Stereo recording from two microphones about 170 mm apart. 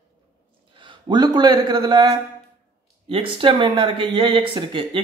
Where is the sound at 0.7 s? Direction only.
25° right (ahead or behind).